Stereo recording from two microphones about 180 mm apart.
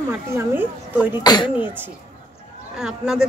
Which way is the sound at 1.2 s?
20° left (ahead or behind).